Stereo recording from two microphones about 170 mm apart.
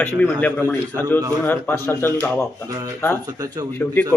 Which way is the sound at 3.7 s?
10° left (ahead or behind).